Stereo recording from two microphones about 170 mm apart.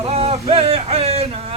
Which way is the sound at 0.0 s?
35° right (ahead or behind).